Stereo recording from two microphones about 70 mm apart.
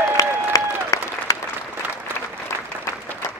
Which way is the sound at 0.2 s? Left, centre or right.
Left.